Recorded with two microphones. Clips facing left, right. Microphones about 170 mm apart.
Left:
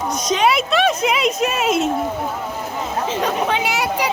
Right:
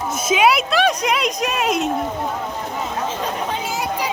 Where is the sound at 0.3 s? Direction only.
5° right (ahead or behind).